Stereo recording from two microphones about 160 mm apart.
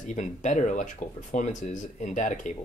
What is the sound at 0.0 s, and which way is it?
Speech, 50° left (ahead or behind).